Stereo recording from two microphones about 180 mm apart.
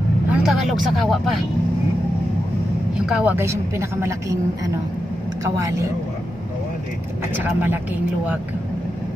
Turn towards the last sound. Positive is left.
turn(degrees=-10)  # may be behind; listen again after turning